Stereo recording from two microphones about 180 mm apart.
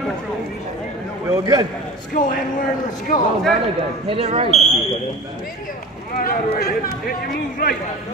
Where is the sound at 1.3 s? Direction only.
20° right (ahead or behind).